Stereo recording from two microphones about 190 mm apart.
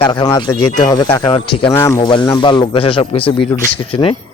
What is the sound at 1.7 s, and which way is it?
A man's voice, 15° left (ahead or behind).